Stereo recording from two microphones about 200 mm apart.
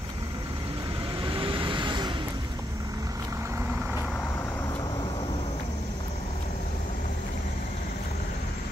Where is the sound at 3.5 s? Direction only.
10° right (ahead or behind).